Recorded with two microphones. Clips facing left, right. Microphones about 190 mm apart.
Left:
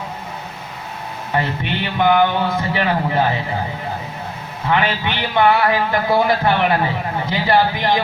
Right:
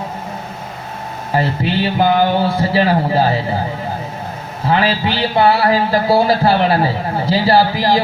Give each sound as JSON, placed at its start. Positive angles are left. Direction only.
{"t": 1.3, "sound": "speech", "side_deg": -30}
{"t": 4.6, "sound": "speech", "side_deg": -35}